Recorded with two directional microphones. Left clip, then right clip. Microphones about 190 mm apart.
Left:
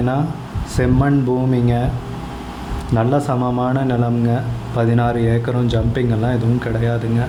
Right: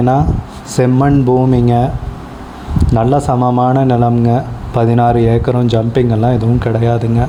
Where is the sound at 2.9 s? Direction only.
30° right (ahead or behind).